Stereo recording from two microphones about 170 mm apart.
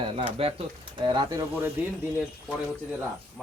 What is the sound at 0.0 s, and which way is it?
Speech, 35° right (ahead or behind).